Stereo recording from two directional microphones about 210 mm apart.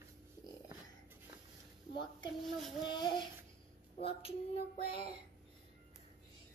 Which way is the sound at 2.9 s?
20° left (ahead or behind).